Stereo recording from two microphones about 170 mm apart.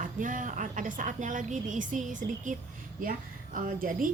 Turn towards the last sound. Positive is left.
turn(degrees=-55)  # may be behind; listen again after turning